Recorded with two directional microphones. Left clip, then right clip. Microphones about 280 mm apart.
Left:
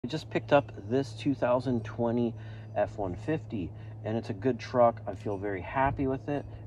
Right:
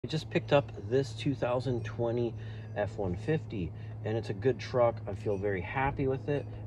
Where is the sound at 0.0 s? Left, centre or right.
Centre.